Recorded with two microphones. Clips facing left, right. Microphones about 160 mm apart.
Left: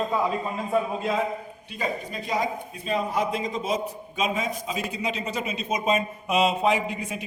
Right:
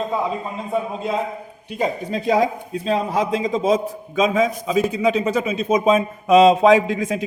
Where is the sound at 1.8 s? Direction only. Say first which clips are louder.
Right 8 dB; 90° right.